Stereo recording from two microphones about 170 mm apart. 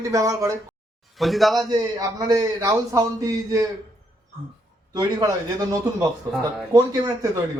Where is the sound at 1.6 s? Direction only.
20° right (ahead or behind).